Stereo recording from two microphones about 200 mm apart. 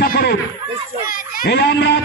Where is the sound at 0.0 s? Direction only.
50° left (ahead or behind).